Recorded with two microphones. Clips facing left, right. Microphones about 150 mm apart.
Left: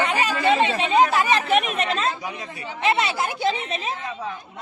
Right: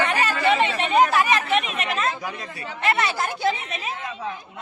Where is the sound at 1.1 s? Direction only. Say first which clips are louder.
Left 1 dB; 25° left (ahead or behind).